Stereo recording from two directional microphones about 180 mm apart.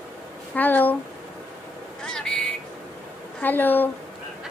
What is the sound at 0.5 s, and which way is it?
Speech, 10° left (ahead or behind).